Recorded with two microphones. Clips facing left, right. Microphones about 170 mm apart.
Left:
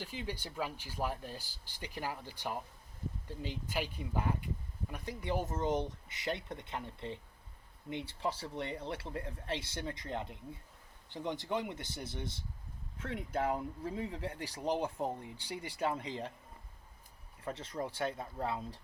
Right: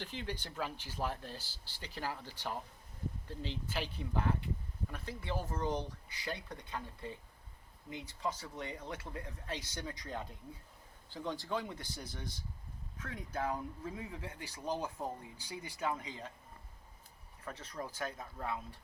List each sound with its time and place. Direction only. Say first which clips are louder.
0.0 s speech: left 1 dB; 10° left (ahead or behind); by 16.3 s 30° left (ahead or behind)
17.4 s speech: left 5 dB; 25° left (ahead or behind)